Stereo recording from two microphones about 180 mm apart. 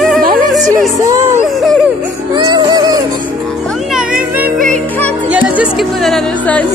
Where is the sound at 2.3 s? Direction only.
20° right (ahead or behind).